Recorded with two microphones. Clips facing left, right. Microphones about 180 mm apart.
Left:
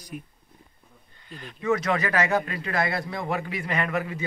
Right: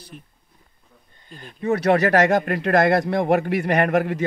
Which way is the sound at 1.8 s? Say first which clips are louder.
Right 8 dB; 65° right (ahead or behind).